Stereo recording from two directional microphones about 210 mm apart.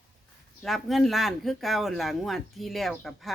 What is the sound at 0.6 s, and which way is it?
Speech, centre (ahead or behind).